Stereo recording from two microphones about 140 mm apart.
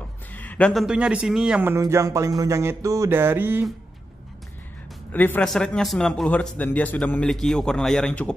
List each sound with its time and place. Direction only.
0.3 s a sound: 10° left (ahead or behind)
0.8 s speech: 10° right (ahead or behind)
5.1 s a man's voice: 10° left (ahead or behind)